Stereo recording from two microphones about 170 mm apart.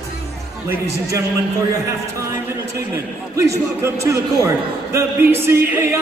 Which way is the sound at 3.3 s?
15° right (ahead or behind).